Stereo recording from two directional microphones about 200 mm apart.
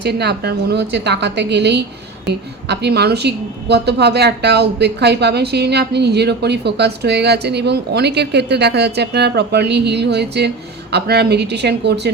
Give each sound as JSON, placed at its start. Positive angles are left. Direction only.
{"t": 0.0, "sound": "a woman's voice", "side_deg": -55}